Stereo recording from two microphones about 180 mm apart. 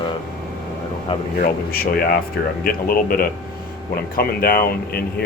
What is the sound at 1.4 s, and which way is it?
Speech, 55° left (ahead or behind).